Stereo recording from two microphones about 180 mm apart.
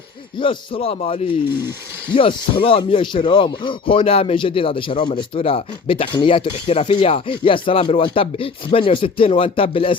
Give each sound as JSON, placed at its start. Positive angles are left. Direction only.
{"t": 0.3, "sound": "speech", "side_deg": 30}